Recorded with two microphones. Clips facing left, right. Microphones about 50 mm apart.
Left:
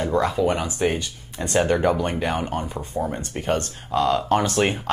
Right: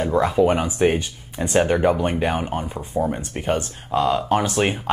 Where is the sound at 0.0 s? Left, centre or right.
Centre.